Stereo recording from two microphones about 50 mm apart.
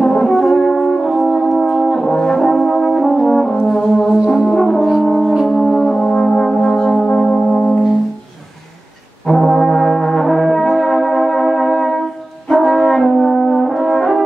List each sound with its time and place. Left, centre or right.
0.0 s brass instrument: centre
4.5 s french horn: centre
5.0 s brass instrument: centre
5.3 s brass instrument: centre
5.6 s brass instrument: centre
5.9 s brass instrument: centre
9.3 s brass instrument: centre